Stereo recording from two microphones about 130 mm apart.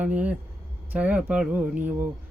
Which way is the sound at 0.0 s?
10° right (ahead or behind).